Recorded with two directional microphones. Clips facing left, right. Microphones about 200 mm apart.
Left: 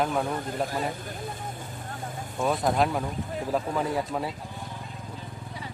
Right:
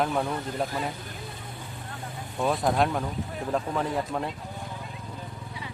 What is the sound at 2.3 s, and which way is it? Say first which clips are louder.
Speech: even; centre (ahead or behind).